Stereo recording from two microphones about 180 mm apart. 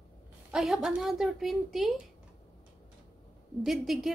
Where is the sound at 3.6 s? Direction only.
Centre (ahead or behind).